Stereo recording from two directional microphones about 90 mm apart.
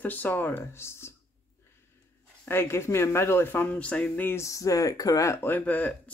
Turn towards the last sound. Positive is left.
turn(degrees=15)  # may be behind; listen again after turning